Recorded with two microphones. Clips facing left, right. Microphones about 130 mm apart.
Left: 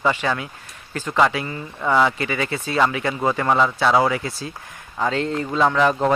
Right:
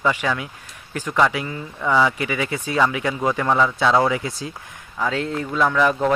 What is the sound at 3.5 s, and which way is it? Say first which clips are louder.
Speech: left 1 dB; 15° left (ahead or behind).